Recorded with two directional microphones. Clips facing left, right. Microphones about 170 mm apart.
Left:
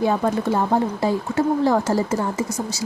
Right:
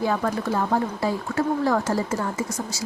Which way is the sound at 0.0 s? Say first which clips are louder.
Left 4 dB; 25° left (ahead or behind).